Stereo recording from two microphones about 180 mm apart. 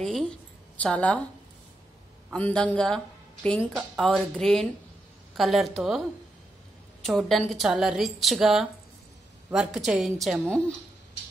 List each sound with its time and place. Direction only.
0.8 s speech: 5° left (ahead or behind)
2.3 s a woman's voice: 5° left (ahead or behind)